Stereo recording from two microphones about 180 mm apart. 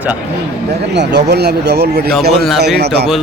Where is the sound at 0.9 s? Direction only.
65° right (ahead or behind).